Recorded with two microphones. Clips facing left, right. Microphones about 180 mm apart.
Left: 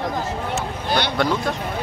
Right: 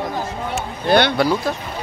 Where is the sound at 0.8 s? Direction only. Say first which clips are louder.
Right 8 dB; 60° right (ahead or behind).